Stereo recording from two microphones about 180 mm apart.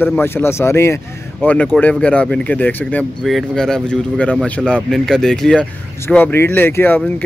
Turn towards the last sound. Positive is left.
turn(degrees=10)  # may be behind; listen again after turning